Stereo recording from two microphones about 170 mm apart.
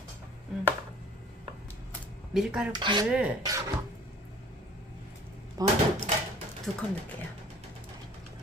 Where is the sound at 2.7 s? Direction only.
25° right (ahead or behind).